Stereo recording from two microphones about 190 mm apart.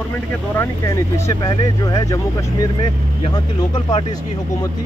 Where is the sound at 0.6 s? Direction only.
15° left (ahead or behind).